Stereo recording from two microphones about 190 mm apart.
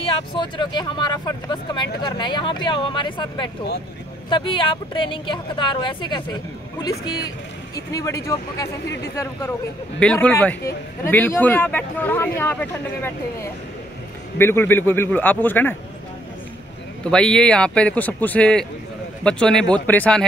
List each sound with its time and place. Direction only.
0.0 s speech: 25° left (ahead or behind); by 15.7 s 10° left (ahead or behind)
17.0 s a man's voice: 5° left (ahead or behind)